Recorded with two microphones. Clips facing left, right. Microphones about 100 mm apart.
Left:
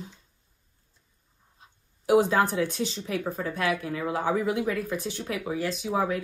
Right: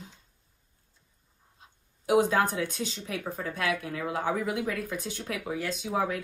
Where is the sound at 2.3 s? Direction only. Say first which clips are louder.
Left 3 dB; 45° left (ahead or behind).